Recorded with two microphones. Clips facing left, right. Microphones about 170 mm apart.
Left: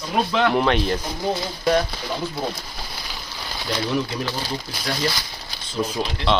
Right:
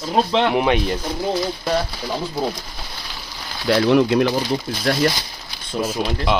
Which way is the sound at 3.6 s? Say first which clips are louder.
Right 10 dB; 65° right (ahead or behind).